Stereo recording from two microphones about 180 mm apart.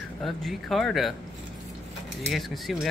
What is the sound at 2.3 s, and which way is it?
Speech, centre (ahead or behind).